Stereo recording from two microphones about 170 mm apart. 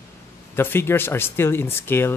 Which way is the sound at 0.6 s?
15° left (ahead or behind).